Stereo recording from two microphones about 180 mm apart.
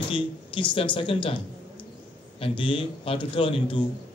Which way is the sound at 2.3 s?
30° left (ahead or behind).